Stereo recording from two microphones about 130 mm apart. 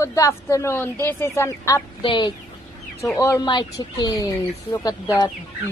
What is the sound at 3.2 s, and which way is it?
A woman's voice, 25° left (ahead or behind).